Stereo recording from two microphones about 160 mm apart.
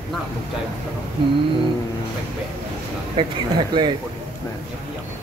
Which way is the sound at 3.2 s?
30° right (ahead or behind).